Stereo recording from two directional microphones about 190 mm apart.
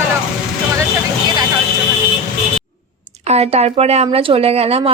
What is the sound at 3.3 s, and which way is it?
A woman's voice, 35° right (ahead or behind).